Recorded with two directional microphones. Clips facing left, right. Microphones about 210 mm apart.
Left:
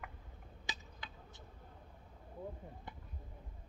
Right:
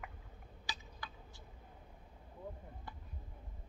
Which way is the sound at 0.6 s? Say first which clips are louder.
Right 1 dB; 20° left (ahead or behind).